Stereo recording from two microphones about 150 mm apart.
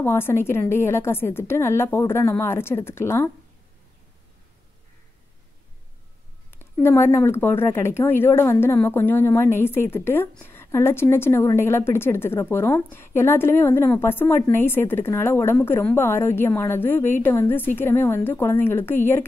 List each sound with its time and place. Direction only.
0.0 s a woman's voice: 15° left (ahead or behind)
6.5 s a woman's voice: 15° left (ahead or behind)